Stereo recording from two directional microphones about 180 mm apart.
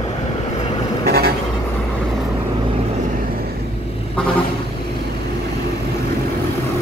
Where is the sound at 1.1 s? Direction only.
60° right (ahead or behind).